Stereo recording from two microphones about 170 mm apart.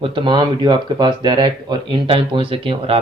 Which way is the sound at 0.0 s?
30° right (ahead or behind).